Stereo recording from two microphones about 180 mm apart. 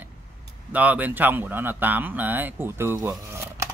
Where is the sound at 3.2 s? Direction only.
15° right (ahead or behind).